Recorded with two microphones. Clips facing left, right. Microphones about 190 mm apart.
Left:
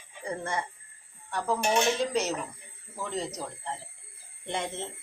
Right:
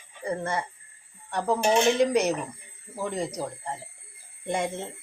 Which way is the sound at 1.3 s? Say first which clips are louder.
Right 4 dB; 20° right (ahead or behind).